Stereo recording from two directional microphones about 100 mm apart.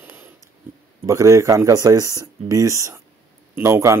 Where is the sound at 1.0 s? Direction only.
30° right (ahead or behind).